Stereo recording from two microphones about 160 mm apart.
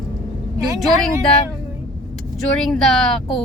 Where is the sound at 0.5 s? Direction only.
25° right (ahead or behind).